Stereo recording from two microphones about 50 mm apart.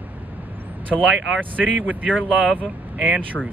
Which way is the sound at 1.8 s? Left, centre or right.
Right.